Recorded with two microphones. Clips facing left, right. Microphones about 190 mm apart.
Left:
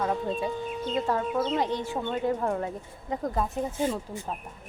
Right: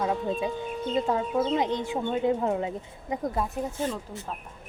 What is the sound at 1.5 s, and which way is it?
Speech, 15° right (ahead or behind).